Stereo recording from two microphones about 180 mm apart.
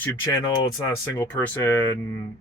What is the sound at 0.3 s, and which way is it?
Speech, 20° left (ahead or behind).